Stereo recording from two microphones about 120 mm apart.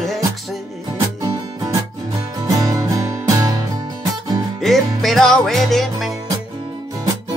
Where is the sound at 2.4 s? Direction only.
30° right (ahead or behind).